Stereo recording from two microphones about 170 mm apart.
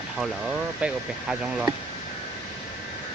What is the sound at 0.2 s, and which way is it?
Speech, 5° right (ahead or behind).